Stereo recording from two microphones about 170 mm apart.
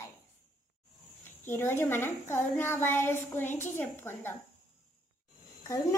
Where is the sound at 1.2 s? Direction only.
15° left (ahead or behind).